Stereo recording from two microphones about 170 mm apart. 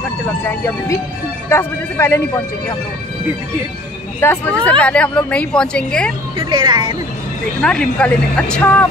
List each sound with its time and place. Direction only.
0.5 s a woman's voice: 15° left (ahead or behind)
4.2 s a woman's voice: 10° left (ahead or behind)
6.3 s speech: 30° right (ahead or behind)
7.6 s a woman's voice: 5° left (ahead or behind)